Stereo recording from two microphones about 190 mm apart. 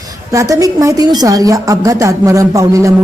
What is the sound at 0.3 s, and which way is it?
A woman's voice, 15° right (ahead or behind).